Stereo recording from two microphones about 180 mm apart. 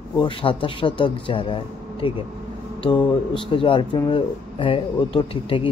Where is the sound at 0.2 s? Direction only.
30° left (ahead or behind).